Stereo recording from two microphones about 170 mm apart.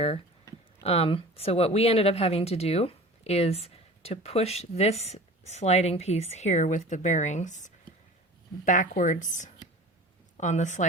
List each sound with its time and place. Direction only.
0.8 s speech: 35° left (ahead or behind)